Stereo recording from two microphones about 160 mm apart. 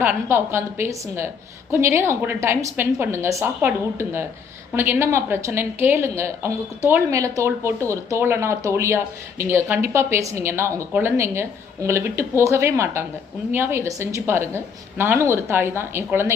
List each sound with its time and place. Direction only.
0.0 s a woman's voice: 15° right (ahead or behind)